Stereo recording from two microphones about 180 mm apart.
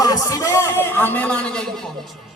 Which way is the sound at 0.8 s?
10° left (ahead or behind).